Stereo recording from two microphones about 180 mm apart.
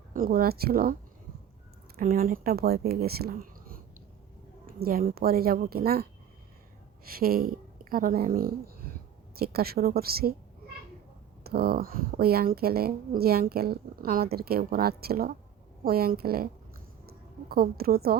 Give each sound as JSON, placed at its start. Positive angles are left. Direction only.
{"t": 0.1, "sound": "speech", "side_deg": -55}
{"t": 2.0, "sound": "speech", "side_deg": -50}
{"t": 4.8, "sound": "speech", "side_deg": -55}
{"t": 11.4, "sound": "speech", "side_deg": -60}
{"t": 17.5, "sound": "speech", "side_deg": -55}